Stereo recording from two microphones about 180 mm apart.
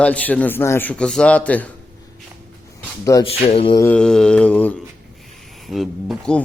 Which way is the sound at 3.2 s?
30° left (ahead or behind).